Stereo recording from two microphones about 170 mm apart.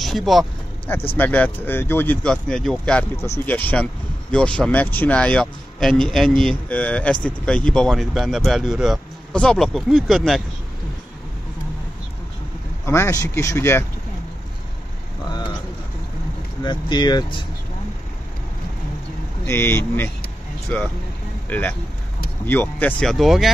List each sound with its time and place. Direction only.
0.0 s speech: centre (ahead or behind)
1.1 s speech: 10° left (ahead or behind)
12.8 s a man's voice: 15° left (ahead or behind)
16.6 s speech: 25° left (ahead or behind)
19.4 s a man's voice: 15° left (ahead or behind)